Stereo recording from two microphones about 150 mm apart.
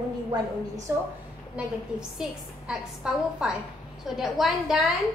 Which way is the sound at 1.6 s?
10° right (ahead or behind).